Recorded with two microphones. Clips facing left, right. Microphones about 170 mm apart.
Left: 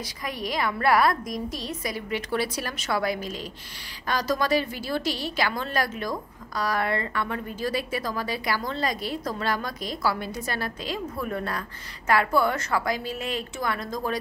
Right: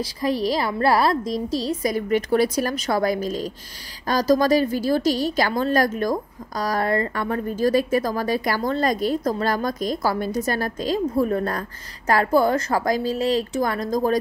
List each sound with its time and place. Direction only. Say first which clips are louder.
0.0 s a woman's voice: right 10 dB; 35° right (ahead or behind)